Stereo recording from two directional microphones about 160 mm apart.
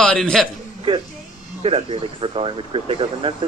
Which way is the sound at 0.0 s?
5° left (ahead or behind).